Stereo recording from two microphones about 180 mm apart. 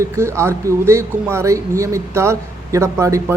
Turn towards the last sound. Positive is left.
turn(degrees=-15)  # may be behind; listen again after turning